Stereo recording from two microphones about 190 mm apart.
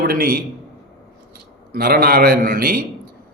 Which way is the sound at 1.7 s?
55° right (ahead or behind).